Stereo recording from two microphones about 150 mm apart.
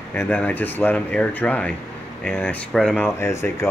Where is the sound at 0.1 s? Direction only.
15° left (ahead or behind).